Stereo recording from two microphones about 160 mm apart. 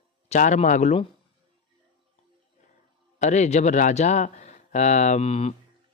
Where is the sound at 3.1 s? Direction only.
45° left (ahead or behind).